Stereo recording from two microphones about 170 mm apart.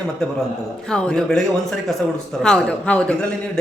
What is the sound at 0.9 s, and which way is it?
A man's voice, 5° left (ahead or behind).